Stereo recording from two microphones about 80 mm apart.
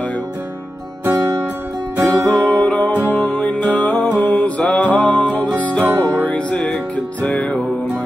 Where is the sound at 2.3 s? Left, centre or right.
Centre.